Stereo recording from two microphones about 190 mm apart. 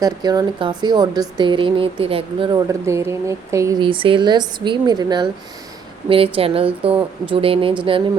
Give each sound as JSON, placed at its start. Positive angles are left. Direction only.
{"t": 0.0, "sound": "speech", "side_deg": -20}
{"t": 2.6, "sound": "speech", "side_deg": -15}